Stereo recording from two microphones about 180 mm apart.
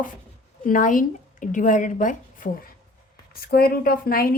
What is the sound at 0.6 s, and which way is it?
A woman's voice, 45° left (ahead or behind).